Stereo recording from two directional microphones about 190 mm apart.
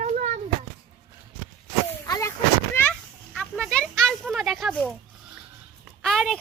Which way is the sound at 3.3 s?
5° left (ahead or behind).